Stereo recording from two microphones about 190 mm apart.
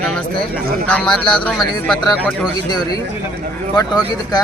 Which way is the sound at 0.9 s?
5° left (ahead or behind).